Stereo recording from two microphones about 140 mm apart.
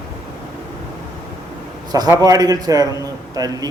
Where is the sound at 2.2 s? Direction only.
25° right (ahead or behind).